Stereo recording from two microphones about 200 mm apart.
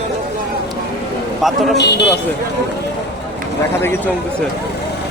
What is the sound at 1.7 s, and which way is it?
Speech, 60° left (ahead or behind).